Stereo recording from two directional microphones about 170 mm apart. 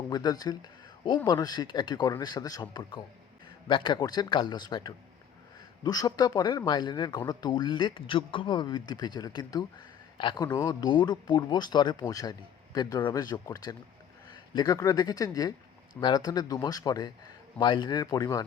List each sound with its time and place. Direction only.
0.1 s speech: 25° left (ahead or behind)